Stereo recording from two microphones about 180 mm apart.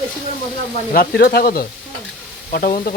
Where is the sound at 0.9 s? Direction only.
60° left (ahead or behind).